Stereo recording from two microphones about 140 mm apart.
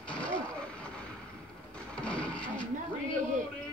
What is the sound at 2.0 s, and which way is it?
Printer, 10° left (ahead or behind).